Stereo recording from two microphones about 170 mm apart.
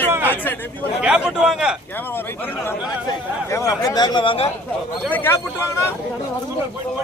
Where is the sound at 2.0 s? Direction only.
10° left (ahead or behind); by 4.5 s 35° left (ahead or behind).